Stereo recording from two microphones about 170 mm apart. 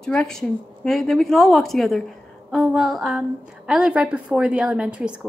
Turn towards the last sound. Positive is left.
turn(degrees=-5)  # may be behind; listen again after turning